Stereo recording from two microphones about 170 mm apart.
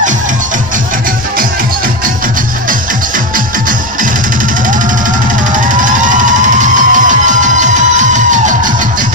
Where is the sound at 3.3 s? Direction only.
55° right (ahead or behind).